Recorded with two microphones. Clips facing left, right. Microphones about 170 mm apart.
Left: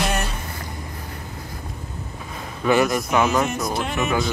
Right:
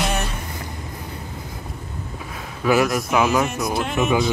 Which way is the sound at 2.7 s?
Centre (ahead or behind).